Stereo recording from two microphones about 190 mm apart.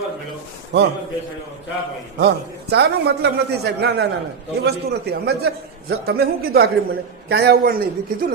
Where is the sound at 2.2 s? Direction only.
60° right (ahead or behind).